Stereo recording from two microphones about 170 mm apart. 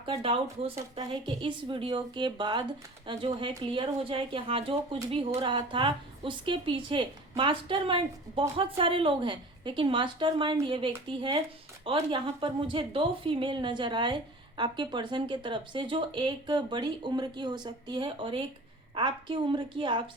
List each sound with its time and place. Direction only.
0.0 s a woman's voice: 35° right (ahead or behind)